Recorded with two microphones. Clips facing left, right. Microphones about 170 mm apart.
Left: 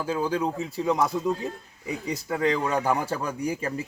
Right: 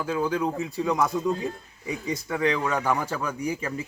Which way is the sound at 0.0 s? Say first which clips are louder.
Even; 30° left (ahead or behind).